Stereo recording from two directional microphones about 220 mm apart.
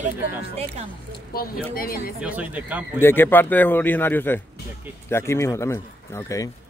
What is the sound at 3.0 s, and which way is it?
A man's voice, 10° left (ahead or behind).